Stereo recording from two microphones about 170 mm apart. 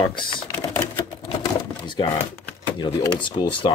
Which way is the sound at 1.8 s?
25° left (ahead or behind).